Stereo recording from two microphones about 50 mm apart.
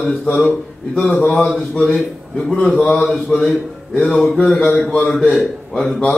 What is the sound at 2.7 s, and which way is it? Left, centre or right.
Speech, left.